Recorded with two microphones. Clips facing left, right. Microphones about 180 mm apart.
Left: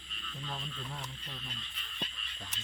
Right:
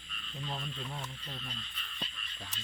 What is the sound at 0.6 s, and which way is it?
Speech, 10° right (ahead or behind).